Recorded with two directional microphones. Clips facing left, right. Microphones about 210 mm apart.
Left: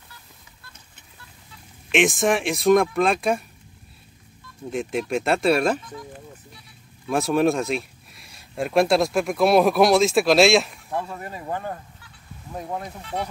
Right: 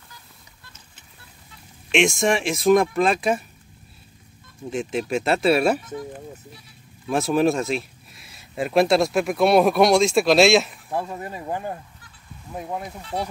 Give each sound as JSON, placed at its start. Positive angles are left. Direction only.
{"t": 1.9, "sound": "speech", "side_deg": 0}
{"t": 4.6, "sound": "speech", "side_deg": 0}
{"t": 7.1, "sound": "speech", "side_deg": 0}
{"t": 11.1, "sound": "speech", "side_deg": -20}
{"t": 13.0, "sound": "speech", "side_deg": -35}